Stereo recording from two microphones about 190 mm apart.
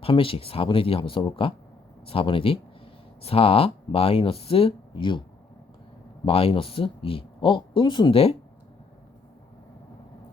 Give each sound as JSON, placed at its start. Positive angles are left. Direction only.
{"t": 0.0, "sound": "speech", "side_deg": 30}
{"t": 6.2, "sound": "speech", "side_deg": 30}